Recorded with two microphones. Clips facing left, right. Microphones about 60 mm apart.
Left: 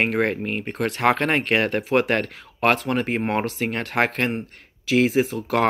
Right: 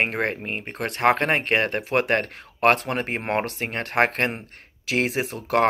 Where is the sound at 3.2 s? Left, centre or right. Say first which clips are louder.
Left 2 dB; right.